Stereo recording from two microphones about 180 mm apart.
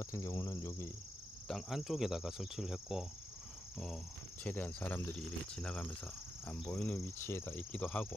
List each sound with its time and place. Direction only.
0.0 s speech: 15° left (ahead or behind)
1.5 s cricket: centre (ahead or behind)
3.8 s speech: 5° left (ahead or behind)